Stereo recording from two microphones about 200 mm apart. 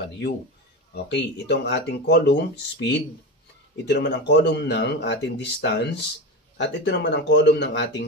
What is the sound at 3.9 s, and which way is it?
A man's voice, 60° left (ahead or behind).